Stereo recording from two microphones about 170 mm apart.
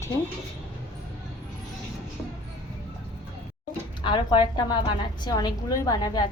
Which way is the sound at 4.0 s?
30° left (ahead or behind).